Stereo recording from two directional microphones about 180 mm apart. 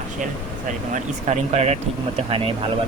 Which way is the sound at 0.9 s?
40° right (ahead or behind).